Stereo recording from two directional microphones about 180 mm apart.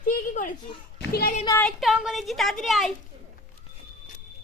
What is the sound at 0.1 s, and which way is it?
Speech, 45° left (ahead or behind).